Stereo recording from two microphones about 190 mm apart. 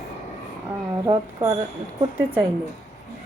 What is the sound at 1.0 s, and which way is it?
Speech, 15° right (ahead or behind).